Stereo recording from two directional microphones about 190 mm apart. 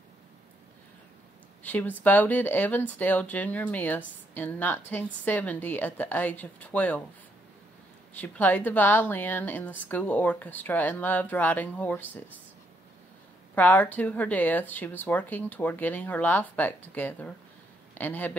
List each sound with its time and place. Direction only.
1.6 s speech: 10° left (ahead or behind)
8.1 s speech: 10° left (ahead or behind)
13.6 s speech: 10° left (ahead or behind)